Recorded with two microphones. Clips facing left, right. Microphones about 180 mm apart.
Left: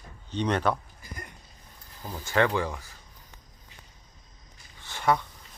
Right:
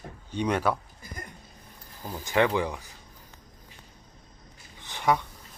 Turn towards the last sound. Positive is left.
turn(degrees=-15)  # may be behind; listen again after turning